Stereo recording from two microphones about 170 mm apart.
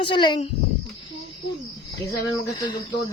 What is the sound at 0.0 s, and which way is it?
Speech, 30° left (ahead or behind).